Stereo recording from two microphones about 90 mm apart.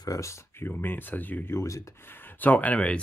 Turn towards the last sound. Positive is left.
turn(degrees=15)  # may be behind; listen again after turning